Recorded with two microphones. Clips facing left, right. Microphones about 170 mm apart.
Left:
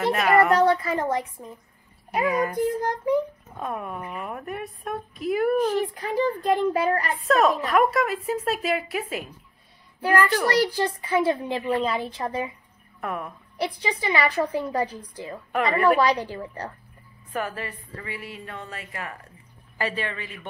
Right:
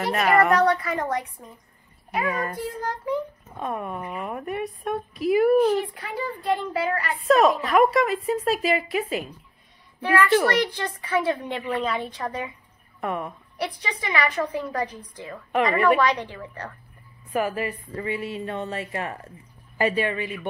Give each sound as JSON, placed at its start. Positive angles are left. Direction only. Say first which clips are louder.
{"t": 0.0, "sound": "a woman's voice", "louder": "left 1 dB", "side_deg": 0}
{"t": 0.6, "sound": "a woman's voice", "louder": "left 1 dB", "side_deg": 25}
{"t": 2.2, "sound": "a child's voice", "louder": "left 6 dB", "side_deg": 10}
{"t": 3.5, "sound": "a woman's voice", "louder": "right 2 dB", "side_deg": 0}
{"t": 5.9, "sound": "a child's voice", "louder": "left 7 dB", "side_deg": 45}
{"t": 7.2, "sound": "a woman's voice", "louder": "right 3 dB", "side_deg": 0}
{"t": 10.0, "sound": "a woman's voice", "louder": "right 2 dB", "side_deg": 35}
{"t": 13.0, "sound": "a woman's voice", "louder": "right 3 dB", "side_deg": 0}
{"t": 13.6, "sound": "a woman's voice", "louder": "left 3 dB", "side_deg": 30}
{"t": 15.5, "sound": "a woman's voice", "louder": "right 1 dB", "side_deg": 0}
{"t": 16.0, "sound": "a woman's voice", "louder": "left 1 dB", "side_deg": 35}
{"t": 17.3, "sound": "a woman's voice", "louder": "right 5 dB", "side_deg": -10}
{"t": 17.9, "sound": "speech", "louder": "right 9 dB", "side_deg": -25}
{"t": 19.8, "sound": "a woman's voice", "louder": "right 6 dB", "side_deg": -15}